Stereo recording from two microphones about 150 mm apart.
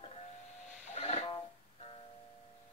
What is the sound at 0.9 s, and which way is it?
Music, 45° left (ahead or behind).